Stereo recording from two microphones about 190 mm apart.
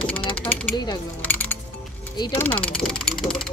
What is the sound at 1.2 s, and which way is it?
Music, 10° left (ahead or behind).